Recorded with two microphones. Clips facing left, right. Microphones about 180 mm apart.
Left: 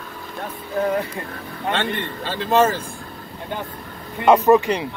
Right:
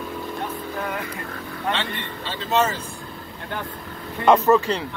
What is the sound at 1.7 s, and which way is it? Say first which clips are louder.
A man's voice: left 5 dB; 50° left (ahead or behind).